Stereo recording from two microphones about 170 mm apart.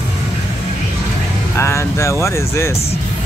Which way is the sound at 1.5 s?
15° left (ahead or behind).